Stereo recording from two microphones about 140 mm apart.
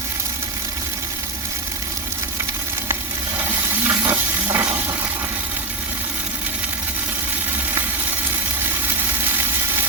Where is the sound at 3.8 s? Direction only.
15° right (ahead or behind).